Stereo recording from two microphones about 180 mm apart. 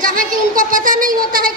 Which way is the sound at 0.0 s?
50° right (ahead or behind).